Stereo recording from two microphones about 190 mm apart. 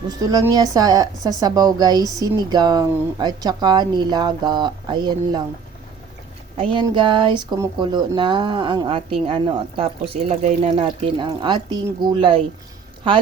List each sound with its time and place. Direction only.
0.1 s a woman's voice: 20° right (ahead or behind)
6.6 s a woman's voice: 25° right (ahead or behind)
13.0 s a woman's voice: 25° right (ahead or behind)